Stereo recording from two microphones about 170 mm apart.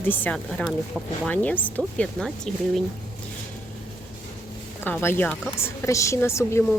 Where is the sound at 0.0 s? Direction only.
10° left (ahead or behind).